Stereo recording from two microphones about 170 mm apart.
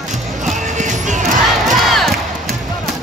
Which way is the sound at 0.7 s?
45° right (ahead or behind).